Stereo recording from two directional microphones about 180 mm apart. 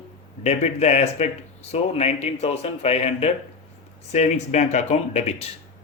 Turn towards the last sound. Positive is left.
turn(degrees=35)  # may be behind; listen again after turning